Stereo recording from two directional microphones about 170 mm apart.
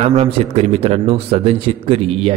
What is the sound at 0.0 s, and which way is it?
Speech, 40° right (ahead or behind).